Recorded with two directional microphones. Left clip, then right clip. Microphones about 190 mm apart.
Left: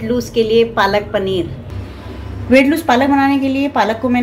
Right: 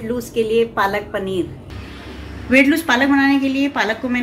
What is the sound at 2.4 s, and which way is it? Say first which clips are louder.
A woman's voice: left 3 dB; 25° left (ahead or behind).